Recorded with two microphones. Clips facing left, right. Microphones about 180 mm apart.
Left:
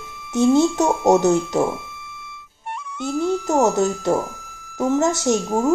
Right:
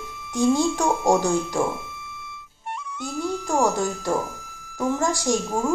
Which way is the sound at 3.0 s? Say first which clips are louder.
Left 7 dB; 25° left (ahead or behind).